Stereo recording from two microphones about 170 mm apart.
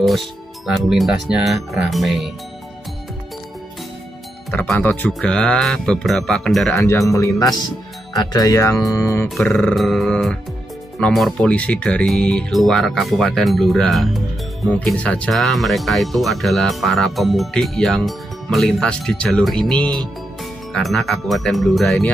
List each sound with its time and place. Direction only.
0.7 s speech: centre (ahead or behind)
4.5 s speech: 5° left (ahead or behind)
7.1 s speech: 20° left (ahead or behind)
9.3 s speech: 5° left (ahead or behind)